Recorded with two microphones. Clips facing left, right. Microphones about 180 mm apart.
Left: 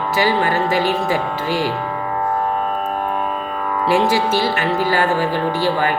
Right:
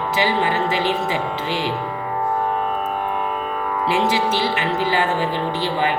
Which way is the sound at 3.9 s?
20° right (ahead or behind).